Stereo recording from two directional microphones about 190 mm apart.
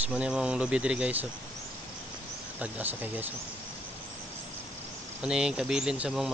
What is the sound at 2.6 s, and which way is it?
Speech, 10° right (ahead or behind).